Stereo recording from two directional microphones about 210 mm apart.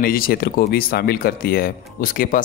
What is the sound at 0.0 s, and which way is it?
Speech, 45° left (ahead or behind).